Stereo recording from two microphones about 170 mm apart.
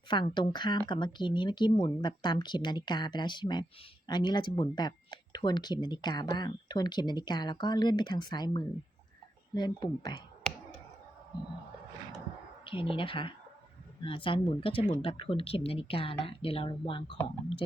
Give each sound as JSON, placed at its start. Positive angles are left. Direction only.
{"t": 0.1, "sound": "speech", "side_deg": 25}
{"t": 12.6, "sound": "a woman's voice", "side_deg": 30}